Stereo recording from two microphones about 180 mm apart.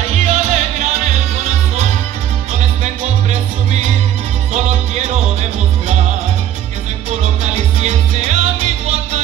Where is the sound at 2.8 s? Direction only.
40° right (ahead or behind).